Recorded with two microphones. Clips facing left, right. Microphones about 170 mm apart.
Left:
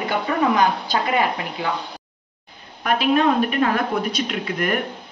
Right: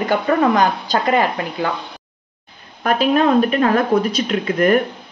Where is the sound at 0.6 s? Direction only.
45° right (ahead or behind).